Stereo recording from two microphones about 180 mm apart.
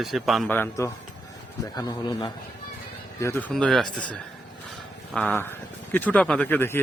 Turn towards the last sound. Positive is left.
turn(degrees=10)  # may be behind; listen again after turning